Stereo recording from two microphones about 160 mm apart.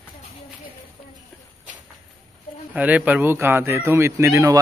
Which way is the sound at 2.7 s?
10° right (ahead or behind).